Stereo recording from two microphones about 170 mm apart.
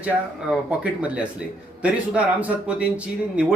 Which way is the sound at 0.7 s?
5° right (ahead or behind).